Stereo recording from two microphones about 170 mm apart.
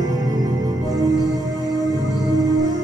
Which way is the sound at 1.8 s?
20° right (ahead or behind).